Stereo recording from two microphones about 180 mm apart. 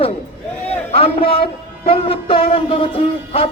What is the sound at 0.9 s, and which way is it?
A man's voice, 35° left (ahead or behind).